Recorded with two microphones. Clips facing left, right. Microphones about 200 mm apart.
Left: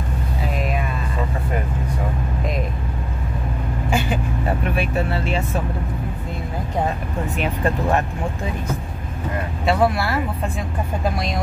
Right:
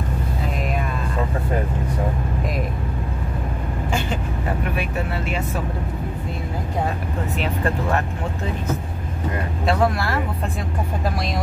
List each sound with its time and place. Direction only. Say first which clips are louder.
0.6 s music: left 2 dB; centre (ahead or behind)
4.7 s speech: left 3 dB; 30° left (ahead or behind)
7.3 s speech: left 2 dB; 15° left (ahead or behind)
9.7 s speech: left 2 dB; 5° left (ahead or behind)